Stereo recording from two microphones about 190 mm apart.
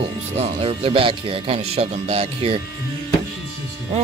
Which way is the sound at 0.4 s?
30° right (ahead or behind).